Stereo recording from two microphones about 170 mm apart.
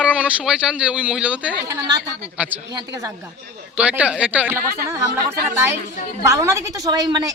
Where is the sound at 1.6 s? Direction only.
20° right (ahead or behind).